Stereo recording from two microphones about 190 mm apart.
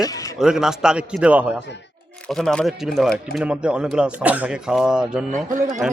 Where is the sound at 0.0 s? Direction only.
20° left (ahead or behind).